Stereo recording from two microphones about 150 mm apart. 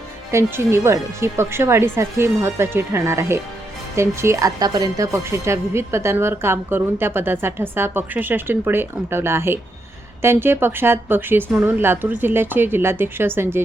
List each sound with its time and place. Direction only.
0.3 s a woman's voice: 15° right (ahead or behind)